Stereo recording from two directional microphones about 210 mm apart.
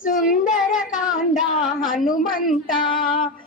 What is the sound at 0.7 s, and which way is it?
A woman's voice, 40° left (ahead or behind).